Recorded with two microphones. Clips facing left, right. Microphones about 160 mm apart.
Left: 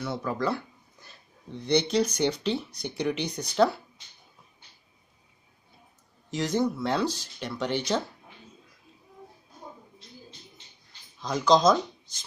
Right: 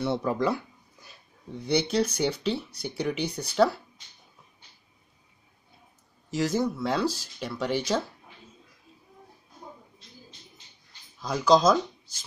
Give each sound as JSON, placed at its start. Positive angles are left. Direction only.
{"t": 0.0, "sound": "speech", "side_deg": -25}
{"t": 1.0, "sound": "speech", "side_deg": -10}
{"t": 6.3, "sound": "speech", "side_deg": -5}
{"t": 11.1, "sound": "speech", "side_deg": -5}